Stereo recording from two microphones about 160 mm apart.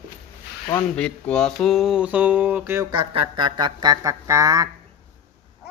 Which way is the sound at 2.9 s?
35° right (ahead or behind).